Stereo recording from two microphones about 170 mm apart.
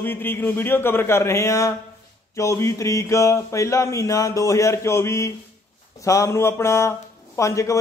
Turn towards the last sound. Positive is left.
turn(degrees=20)  # may be behind; listen again after turning